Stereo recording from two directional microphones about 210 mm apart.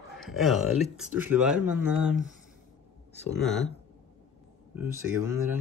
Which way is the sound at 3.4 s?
Centre (ahead or behind).